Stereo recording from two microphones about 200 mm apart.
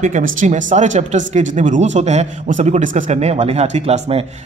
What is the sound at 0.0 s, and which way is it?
Speech, 40° right (ahead or behind).